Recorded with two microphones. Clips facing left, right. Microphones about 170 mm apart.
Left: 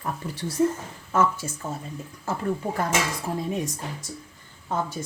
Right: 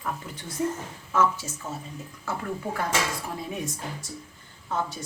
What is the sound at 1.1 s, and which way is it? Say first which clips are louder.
Speech: left 1 dB; 55° left (ahead or behind).